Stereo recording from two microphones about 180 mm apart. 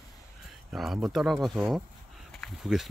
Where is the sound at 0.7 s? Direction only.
Centre (ahead or behind).